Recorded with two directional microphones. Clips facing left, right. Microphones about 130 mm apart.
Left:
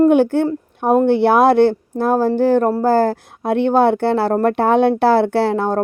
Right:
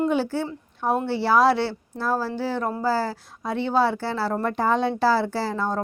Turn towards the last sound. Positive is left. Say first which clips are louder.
# left 9 dB
turn(degrees=65)  # may be behind; listen again after turning